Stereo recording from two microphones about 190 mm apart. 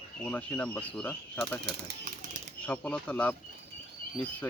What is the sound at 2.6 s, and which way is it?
Speech, 10° left (ahead or behind).